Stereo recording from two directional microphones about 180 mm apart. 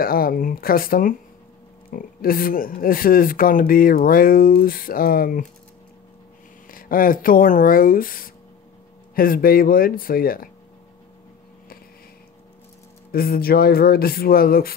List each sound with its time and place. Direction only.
0.0 s speech: 55° left (ahead or behind)
6.7 s speech: 50° left (ahead or behind)
13.1 s speech: 55° left (ahead or behind)